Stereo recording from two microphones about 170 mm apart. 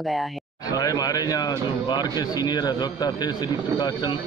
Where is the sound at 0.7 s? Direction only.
20° left (ahead or behind).